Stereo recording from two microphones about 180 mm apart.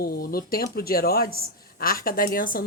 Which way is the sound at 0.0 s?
55° left (ahead or behind).